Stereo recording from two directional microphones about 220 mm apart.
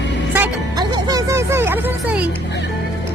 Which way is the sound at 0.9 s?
15° right (ahead or behind).